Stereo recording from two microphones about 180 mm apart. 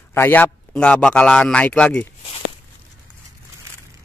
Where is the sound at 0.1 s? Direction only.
10° left (ahead or behind).